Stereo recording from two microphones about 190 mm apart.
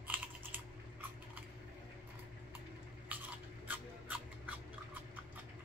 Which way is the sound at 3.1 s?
10° right (ahead or behind).